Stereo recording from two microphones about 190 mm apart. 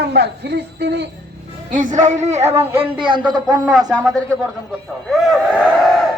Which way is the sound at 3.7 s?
Centre (ahead or behind).